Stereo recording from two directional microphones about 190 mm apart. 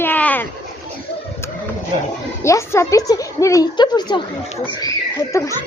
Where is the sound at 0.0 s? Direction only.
10° left (ahead or behind).